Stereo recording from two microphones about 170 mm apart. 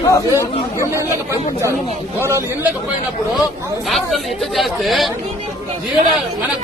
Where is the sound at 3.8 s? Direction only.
Centre (ahead or behind).